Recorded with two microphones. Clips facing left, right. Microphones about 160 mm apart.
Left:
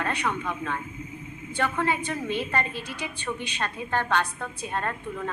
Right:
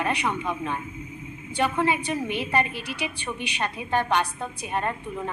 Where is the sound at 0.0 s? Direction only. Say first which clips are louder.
Right 2 dB; 15° right (ahead or behind).